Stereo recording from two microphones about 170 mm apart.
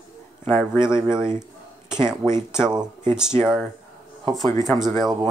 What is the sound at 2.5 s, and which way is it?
Speech, 5° right (ahead or behind).